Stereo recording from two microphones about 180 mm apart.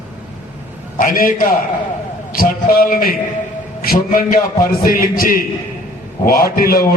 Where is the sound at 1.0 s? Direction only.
50° left (ahead or behind).